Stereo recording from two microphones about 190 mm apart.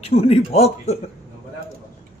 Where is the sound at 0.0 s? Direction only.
35° left (ahead or behind).